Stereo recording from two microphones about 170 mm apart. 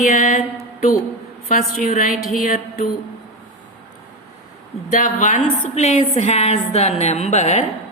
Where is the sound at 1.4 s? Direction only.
50° left (ahead or behind).